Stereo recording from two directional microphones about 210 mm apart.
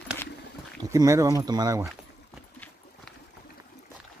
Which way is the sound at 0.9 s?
15° right (ahead or behind).